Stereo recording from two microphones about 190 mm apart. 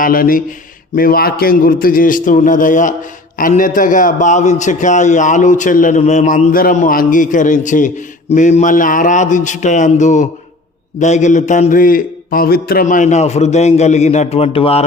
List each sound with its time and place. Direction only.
0.0 s a man's voice: 50° left (ahead or behind); by 14.8 s 30° left (ahead or behind)